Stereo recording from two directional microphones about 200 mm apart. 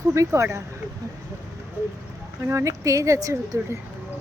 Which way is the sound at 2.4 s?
15° right (ahead or behind).